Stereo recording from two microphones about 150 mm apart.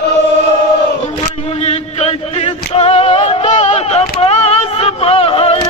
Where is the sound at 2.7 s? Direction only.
45° left (ahead or behind).